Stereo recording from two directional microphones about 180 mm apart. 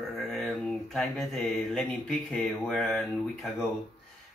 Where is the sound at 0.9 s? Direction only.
Centre (ahead or behind).